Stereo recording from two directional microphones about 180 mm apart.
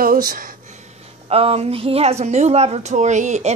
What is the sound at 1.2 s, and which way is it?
A woman's voice, 35° right (ahead or behind).